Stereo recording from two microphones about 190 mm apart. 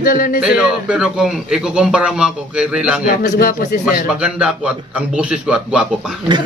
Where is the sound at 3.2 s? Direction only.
45° left (ahead or behind).